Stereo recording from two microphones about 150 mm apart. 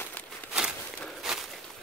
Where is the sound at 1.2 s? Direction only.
Centre (ahead or behind).